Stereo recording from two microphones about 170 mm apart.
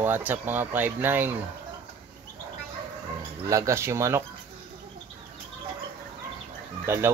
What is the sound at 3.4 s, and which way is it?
Speech, 20° right (ahead or behind).